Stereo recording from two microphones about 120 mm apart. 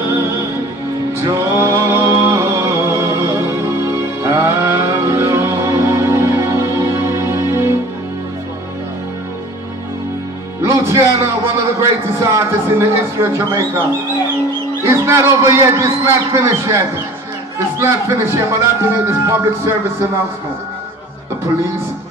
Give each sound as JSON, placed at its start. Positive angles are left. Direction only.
{"t": 1.2, "sound": "a sound", "side_deg": -20}
{"t": 10.6, "sound": "a man's voice", "side_deg": -20}
{"t": 14.9, "sound": "speech", "side_deg": -20}